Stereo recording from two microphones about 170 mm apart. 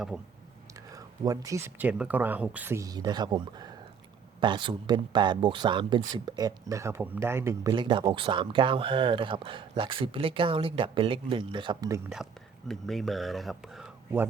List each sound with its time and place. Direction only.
0.9 s speech: 20° right (ahead or behind)
7.7 s speech: 30° right (ahead or behind)
12.0 s speech: centre (ahead or behind)